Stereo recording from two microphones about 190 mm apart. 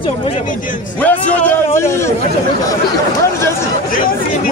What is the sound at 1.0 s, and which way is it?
Speech, 10° left (ahead or behind).